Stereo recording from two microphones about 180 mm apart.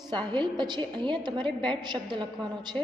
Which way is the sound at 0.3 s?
25° right (ahead or behind).